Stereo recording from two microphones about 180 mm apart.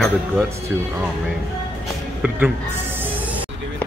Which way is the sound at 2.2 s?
10° right (ahead or behind).